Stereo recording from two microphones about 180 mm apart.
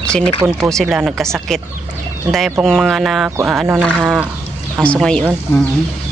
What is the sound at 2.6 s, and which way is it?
Speech, centre (ahead or behind).